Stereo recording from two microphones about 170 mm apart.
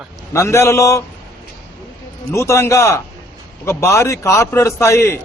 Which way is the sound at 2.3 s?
15° left (ahead or behind).